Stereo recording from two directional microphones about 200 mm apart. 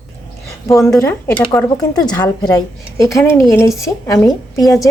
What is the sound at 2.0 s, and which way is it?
Speech, 20° left (ahead or behind).